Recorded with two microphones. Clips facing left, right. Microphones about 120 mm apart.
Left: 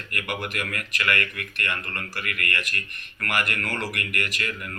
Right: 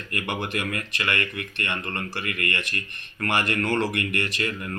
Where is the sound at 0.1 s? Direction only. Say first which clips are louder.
Right 2 dB; 25° right (ahead or behind).